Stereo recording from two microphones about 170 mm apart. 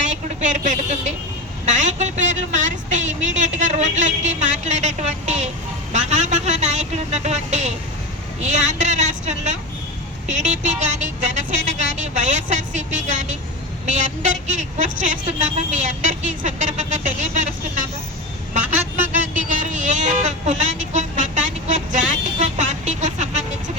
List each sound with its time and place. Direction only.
0.3 s a woman's voice: 45° right (ahead or behind)
19.3 s speech: 50° right (ahead or behind)
20.7 s vehicle: 45° right (ahead or behind)